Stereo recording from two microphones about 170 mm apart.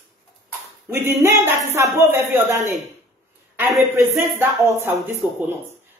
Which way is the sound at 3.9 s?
15° right (ahead or behind).